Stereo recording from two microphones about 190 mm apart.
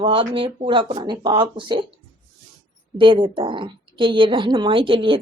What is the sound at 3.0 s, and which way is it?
A woman's voice, 25° right (ahead or behind).